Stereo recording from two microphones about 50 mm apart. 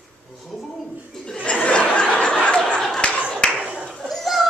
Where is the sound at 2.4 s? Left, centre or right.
Centre.